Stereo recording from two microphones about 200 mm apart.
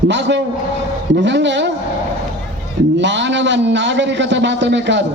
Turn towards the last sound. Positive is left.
turn(degrees=-60)  # may be behind; listen again after turning